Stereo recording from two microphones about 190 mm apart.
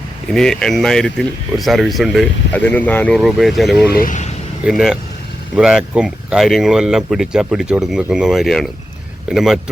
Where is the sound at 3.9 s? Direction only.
50° left (ahead or behind).